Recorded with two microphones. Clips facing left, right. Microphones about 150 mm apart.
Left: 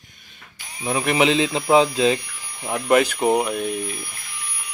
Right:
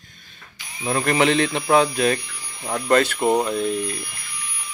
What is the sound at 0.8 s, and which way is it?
Speech, 5° left (ahead or behind).